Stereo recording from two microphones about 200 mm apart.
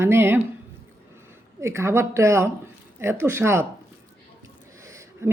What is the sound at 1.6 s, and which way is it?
A woman's voice, 15° right (ahead or behind).